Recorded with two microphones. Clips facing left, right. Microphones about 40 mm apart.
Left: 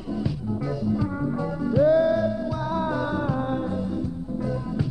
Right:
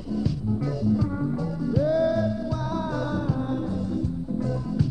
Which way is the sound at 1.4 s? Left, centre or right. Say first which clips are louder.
Left 7 dB; left.